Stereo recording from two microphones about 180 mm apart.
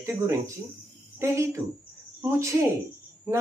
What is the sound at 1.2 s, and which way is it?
Speech, 15° right (ahead or behind).